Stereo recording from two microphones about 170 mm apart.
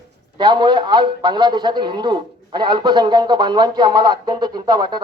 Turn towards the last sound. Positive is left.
turn(degrees=-25)  # may be behind; listen again after turning